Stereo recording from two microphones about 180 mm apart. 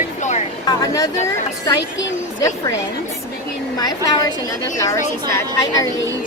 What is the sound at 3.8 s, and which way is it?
A woman's voice, 20° left (ahead or behind).